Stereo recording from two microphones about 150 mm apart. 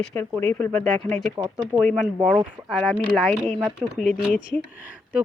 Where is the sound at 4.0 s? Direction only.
10° left (ahead or behind).